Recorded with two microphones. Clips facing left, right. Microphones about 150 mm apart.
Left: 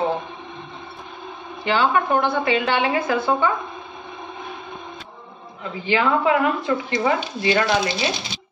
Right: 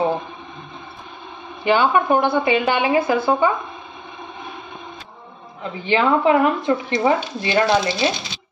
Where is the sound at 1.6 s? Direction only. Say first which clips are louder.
Right 3 dB; 15° right (ahead or behind).